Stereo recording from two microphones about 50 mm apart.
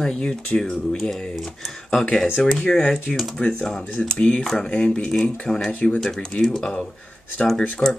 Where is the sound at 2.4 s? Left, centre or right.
Centre.